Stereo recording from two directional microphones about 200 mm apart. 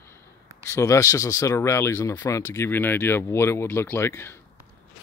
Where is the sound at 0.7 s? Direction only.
15° left (ahead or behind).